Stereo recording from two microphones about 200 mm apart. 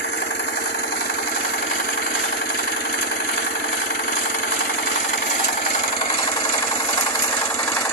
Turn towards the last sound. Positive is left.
turn(degrees=15)  # may be behind; listen again after turning